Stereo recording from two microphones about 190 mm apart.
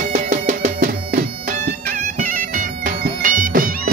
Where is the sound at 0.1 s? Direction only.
40° right (ahead or behind).